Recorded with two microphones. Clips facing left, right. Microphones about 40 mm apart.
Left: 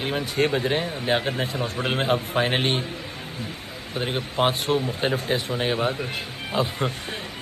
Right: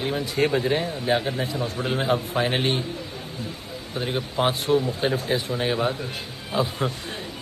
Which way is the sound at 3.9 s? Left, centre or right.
Left.